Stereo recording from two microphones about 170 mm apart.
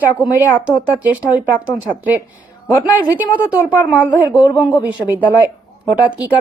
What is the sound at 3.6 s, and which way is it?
Speech, 10° left (ahead or behind).